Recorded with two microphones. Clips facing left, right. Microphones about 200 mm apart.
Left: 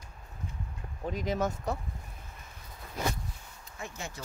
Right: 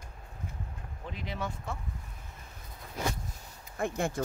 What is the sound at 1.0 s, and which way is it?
Speech, 45° left (ahead or behind).